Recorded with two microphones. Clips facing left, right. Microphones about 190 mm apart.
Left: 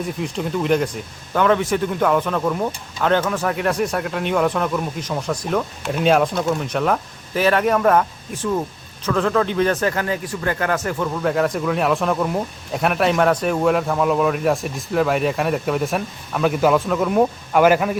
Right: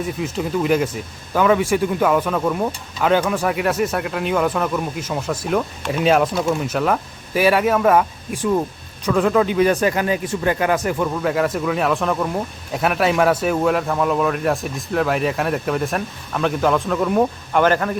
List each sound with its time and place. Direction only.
0.0 s speech: centre (ahead or behind)
11.1 s speech: centre (ahead or behind)